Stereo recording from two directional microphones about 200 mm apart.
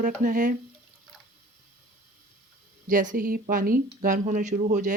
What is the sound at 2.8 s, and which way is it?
Speech, 40° right (ahead or behind).